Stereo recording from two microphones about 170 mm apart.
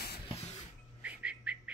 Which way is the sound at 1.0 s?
5° right (ahead or behind).